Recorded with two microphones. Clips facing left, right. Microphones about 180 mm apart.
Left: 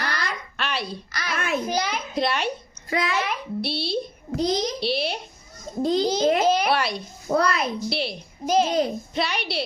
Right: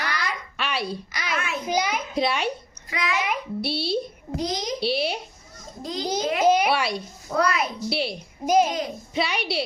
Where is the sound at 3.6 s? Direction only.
5° right (ahead or behind).